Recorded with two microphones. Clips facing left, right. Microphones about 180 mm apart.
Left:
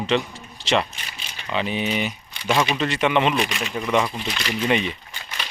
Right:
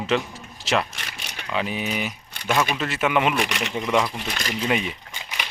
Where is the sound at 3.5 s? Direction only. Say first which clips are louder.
Right 1 dB; 75° right (ahead or behind).